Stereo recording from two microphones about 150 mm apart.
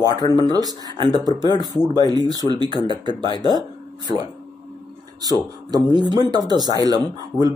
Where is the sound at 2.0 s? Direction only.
25° right (ahead or behind).